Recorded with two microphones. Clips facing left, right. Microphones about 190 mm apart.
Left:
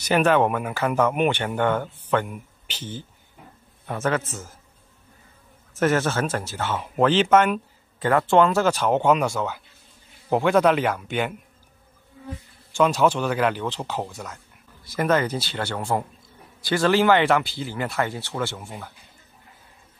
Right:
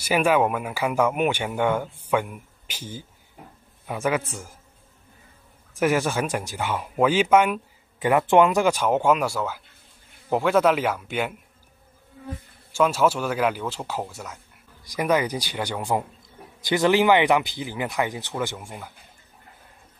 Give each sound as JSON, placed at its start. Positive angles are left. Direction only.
{"t": 0.0, "sound": "speech", "side_deg": -5}
{"t": 5.8, "sound": "speech", "side_deg": -10}
{"t": 12.7, "sound": "speech", "side_deg": -5}